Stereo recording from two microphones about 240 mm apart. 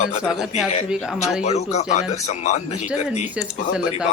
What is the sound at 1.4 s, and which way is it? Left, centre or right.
Speech, left.